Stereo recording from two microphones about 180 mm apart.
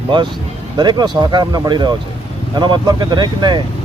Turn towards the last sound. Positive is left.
turn(degrees=-25)  # may be behind; listen again after turning